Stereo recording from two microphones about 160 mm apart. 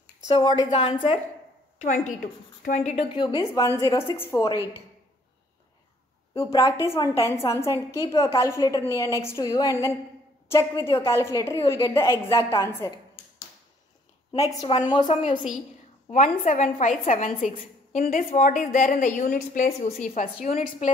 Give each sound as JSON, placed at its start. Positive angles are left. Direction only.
{"t": 0.4, "sound": "a woman's voice", "side_deg": 30}
{"t": 1.8, "sound": "a woman's voice", "side_deg": 50}
{"t": 3.1, "sound": "a woman's voice", "side_deg": 30}
{"t": 6.3, "sound": "a woman's voice", "side_deg": 20}
{"t": 14.3, "sound": "a woman's voice", "side_deg": 20}
{"t": 16.1, "sound": "a woman's voice", "side_deg": 50}